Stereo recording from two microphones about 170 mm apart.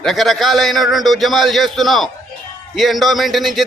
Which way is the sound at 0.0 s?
Centre (ahead or behind).